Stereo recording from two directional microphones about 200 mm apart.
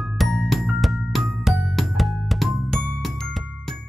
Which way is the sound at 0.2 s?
Centre (ahead or behind).